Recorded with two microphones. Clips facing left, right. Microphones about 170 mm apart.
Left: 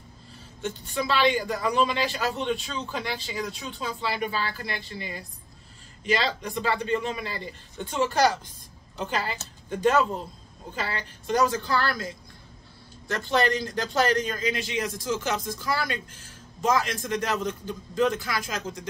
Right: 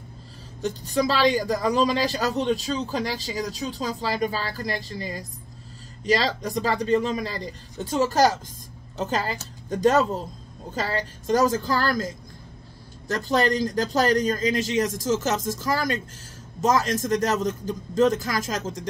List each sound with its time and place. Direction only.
0.6 s speech: 40° right (ahead or behind)
13.1 s a man's voice: 40° right (ahead or behind)